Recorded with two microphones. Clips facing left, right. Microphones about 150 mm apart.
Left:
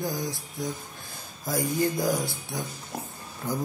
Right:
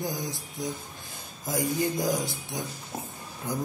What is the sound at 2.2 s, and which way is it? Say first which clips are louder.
Speech: left 1 dB; 20° right (ahead or behind).